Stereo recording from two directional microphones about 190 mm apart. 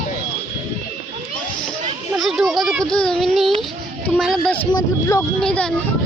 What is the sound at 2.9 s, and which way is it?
Speech, 5° left (ahead or behind).